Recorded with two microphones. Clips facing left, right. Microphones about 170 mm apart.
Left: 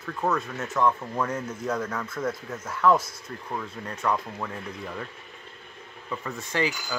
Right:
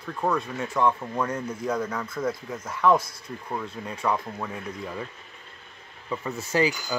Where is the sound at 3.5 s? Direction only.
10° right (ahead or behind).